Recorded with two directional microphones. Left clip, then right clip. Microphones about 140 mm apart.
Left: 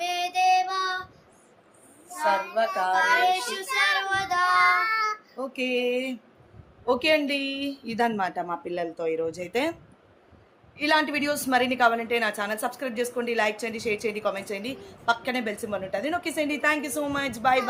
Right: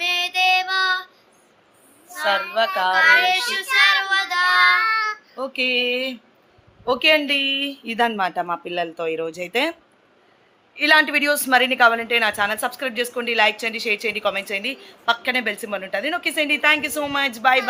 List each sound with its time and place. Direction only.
0.0 s child singing: 40° left (ahead or behind)
2.7 s child singing: 10° right (ahead or behind)
4.0 s child singing: 45° left (ahead or behind)
4.4 s child singing: 20° left (ahead or behind)
5.5 s a woman's voice: centre (ahead or behind)
10.8 s a woman's voice: centre (ahead or behind)